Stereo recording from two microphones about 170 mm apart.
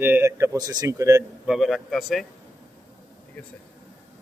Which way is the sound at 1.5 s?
Centre (ahead or behind).